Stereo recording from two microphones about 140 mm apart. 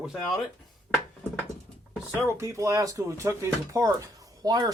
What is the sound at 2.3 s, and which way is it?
Speech, 20° right (ahead or behind).